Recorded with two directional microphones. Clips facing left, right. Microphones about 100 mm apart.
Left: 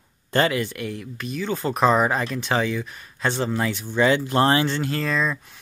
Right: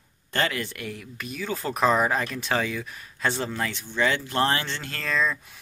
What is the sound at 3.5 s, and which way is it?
Speech, 15° left (ahead or behind).